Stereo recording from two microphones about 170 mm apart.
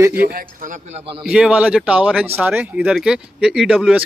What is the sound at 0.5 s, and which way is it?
Speech, 50° right (ahead or behind).